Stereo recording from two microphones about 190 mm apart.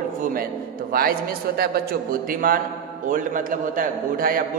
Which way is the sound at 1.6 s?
50° right (ahead or behind).